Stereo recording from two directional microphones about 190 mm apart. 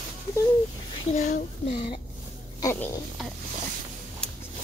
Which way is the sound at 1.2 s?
35° left (ahead or behind).